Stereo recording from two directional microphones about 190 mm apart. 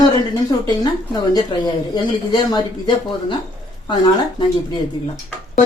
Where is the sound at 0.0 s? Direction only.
20° left (ahead or behind).